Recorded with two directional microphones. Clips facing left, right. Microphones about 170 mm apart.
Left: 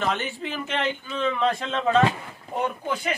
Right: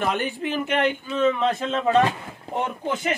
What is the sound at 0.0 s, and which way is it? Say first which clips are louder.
Speech: right 2 dB; 10° right (ahead or behind).